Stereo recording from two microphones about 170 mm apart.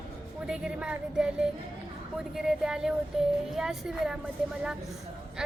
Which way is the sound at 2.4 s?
5° right (ahead or behind).